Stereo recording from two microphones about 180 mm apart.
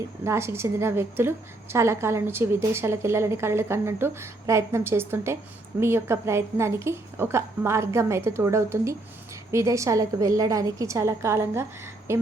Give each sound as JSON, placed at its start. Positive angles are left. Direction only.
{"t": 0.3, "sound": "a woman's voice", "side_deg": -15}